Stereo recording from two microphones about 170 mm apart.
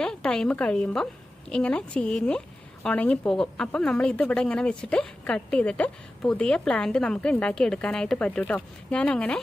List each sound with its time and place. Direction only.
0.0 s a woman's voice: 5° left (ahead or behind)